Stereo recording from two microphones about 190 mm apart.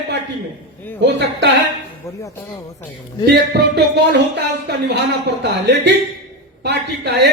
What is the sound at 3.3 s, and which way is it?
Speech, 60° right (ahead or behind).